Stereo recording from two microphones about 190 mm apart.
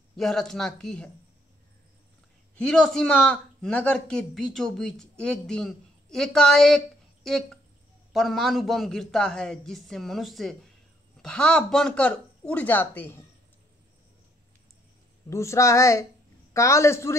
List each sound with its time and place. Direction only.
0.1 s a man's voice: centre (ahead or behind)
2.5 s a man's voice: 5° left (ahead or behind)
15.2 s speech: 15° left (ahead or behind)